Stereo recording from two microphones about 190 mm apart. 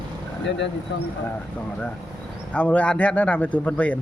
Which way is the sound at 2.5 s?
5° left (ahead or behind).